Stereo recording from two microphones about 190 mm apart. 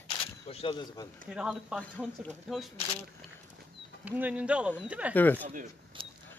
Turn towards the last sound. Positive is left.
turn(degrees=-25)  # may be behind; listen again after turning